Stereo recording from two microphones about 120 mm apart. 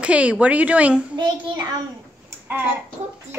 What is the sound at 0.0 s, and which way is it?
Speech, 10° right (ahead or behind).